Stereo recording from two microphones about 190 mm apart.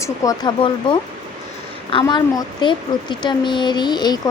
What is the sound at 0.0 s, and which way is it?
A woman's voice, 20° left (ahead or behind).